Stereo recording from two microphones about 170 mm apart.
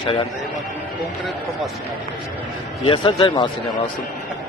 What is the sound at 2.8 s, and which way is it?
Speech, 30° left (ahead or behind).